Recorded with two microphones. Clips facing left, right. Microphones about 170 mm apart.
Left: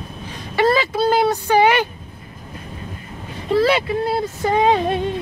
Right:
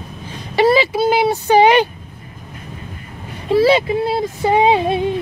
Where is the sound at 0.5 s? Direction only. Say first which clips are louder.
Right 3 dB; 10° right (ahead or behind).